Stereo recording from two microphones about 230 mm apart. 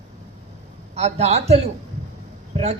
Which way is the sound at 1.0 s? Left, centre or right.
Right.